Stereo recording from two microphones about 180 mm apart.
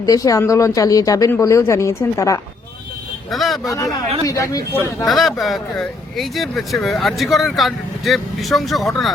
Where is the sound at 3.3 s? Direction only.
Centre (ahead or behind).